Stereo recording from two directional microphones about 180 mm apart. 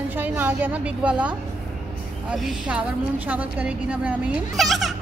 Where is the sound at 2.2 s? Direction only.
5° right (ahead or behind).